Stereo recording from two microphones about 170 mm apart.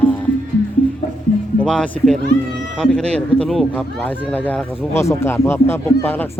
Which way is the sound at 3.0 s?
40° right (ahead or behind).